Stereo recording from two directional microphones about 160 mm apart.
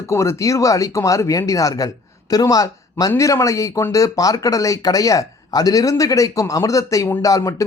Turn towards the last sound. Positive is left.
turn(degrees=20)  # may be behind; listen again after turning